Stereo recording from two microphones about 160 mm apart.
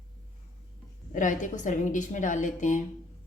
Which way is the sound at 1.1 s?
55° left (ahead or behind).